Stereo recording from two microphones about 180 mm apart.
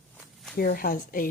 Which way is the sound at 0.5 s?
55° left (ahead or behind).